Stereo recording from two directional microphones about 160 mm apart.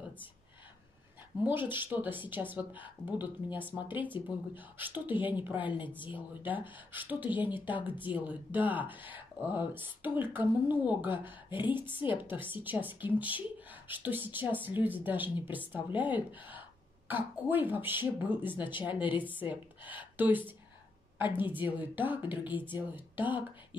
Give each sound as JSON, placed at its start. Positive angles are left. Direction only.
{"t": 1.4, "sound": "speech", "side_deg": -10}
{"t": 5.7, "sound": "a woman's voice", "side_deg": 30}
{"t": 6.0, "sound": "speech", "side_deg": -10}